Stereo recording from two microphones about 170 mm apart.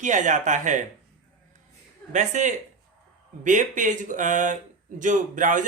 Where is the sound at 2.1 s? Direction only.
45° right (ahead or behind).